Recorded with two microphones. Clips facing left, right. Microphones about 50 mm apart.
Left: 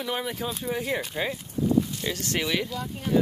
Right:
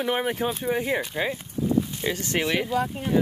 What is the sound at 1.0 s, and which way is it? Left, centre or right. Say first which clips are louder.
Speech: right 2 dB; centre.